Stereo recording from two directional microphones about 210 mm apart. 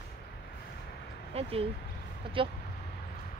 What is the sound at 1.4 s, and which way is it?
Speech, 30° right (ahead or behind).